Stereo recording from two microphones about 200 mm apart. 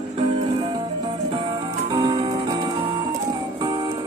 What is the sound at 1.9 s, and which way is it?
Music, 20° right (ahead or behind).